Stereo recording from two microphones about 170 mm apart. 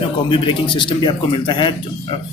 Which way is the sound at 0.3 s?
30° left (ahead or behind).